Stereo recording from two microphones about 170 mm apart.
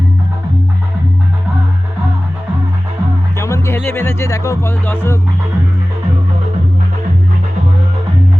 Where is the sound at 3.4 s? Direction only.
15° left (ahead or behind).